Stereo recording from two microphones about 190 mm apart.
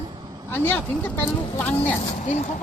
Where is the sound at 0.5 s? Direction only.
10° left (ahead or behind).